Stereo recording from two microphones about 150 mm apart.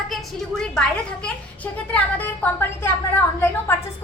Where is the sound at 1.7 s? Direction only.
10° left (ahead or behind).